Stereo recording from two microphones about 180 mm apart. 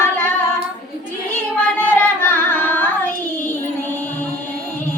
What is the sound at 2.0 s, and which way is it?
Carnatic music, 10° left (ahead or behind).